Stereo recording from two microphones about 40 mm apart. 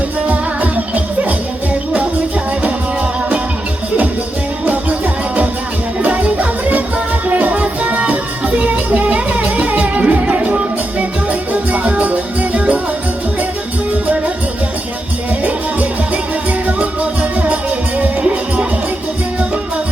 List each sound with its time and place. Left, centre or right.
0.3 s music: right
4.6 s music: right
15.3 s music: right